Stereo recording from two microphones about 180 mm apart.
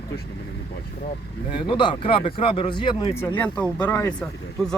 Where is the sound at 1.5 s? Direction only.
25° left (ahead or behind).